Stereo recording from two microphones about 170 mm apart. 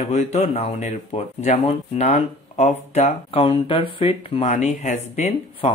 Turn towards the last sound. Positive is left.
turn(degrees=35)  # may be behind; listen again after turning